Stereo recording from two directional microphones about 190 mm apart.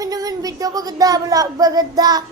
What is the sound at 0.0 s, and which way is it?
A woman's voice, 20° right (ahead or behind).